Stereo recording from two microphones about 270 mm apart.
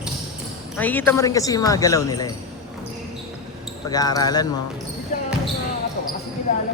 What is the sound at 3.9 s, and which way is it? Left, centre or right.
Speech, centre.